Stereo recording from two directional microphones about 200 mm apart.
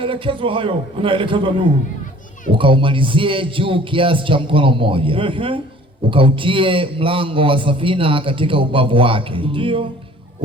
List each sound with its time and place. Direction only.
0.0 s a man's voice: 25° right (ahead or behind)